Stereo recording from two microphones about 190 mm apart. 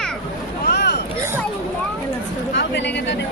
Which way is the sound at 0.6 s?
60° left (ahead or behind).